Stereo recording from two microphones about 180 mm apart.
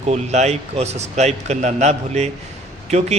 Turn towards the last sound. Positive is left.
turn(degrees=-40)  # may be behind; listen again after turning